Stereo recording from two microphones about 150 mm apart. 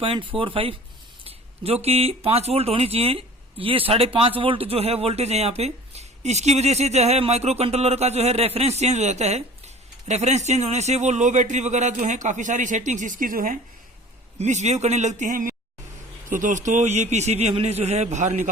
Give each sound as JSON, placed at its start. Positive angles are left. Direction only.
{"t": 0.0, "sound": "speech", "side_deg": -35}
{"t": 14.3, "sound": "speech", "side_deg": -50}